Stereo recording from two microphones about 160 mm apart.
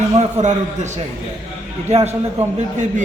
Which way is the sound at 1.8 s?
45° right (ahead or behind).